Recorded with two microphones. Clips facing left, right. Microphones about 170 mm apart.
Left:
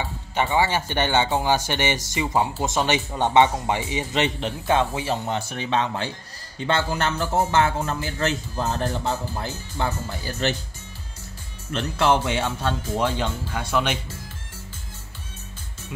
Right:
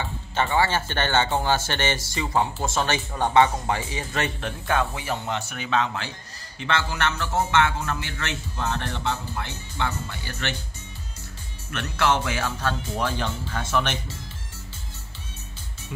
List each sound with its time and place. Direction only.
0.0 s a man's voice: 15° left (ahead or behind); by 10.5 s 35° left (ahead or behind)
11.7 s speech: 30° left (ahead or behind); by 13.9 s 15° left (ahead or behind)